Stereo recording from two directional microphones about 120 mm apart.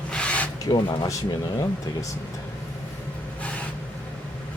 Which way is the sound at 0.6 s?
35° left (ahead or behind).